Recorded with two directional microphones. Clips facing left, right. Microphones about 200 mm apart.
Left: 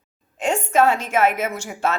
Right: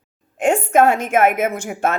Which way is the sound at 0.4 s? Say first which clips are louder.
Right 4 dB; 55° right (ahead or behind).